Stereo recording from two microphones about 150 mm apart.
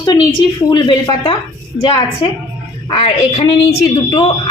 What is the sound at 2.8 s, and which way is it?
Speech, 40° left (ahead or behind).